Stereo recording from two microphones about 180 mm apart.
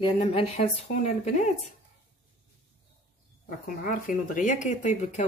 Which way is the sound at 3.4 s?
50° left (ahead or behind).